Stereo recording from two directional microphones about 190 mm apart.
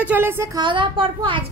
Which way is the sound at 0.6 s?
25° right (ahead or behind).